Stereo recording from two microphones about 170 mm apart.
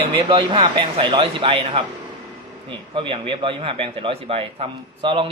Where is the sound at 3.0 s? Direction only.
30° right (ahead or behind).